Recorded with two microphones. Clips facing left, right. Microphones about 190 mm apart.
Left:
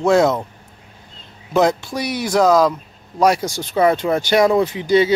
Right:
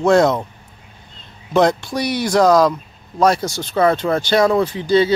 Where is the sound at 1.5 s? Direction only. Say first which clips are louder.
Right 1 dB; 5° left (ahead or behind).